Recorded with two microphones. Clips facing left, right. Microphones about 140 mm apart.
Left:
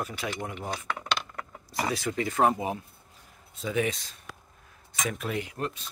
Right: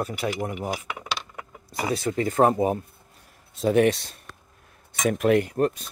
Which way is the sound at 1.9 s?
35° right (ahead or behind).